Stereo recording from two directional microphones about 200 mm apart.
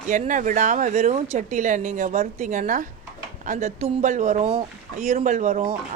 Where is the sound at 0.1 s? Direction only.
40° right (ahead or behind).